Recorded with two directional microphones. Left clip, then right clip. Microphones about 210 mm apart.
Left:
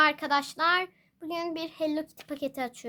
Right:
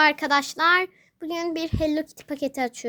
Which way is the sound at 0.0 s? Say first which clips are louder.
Right 5 dB; 30° right (ahead or behind).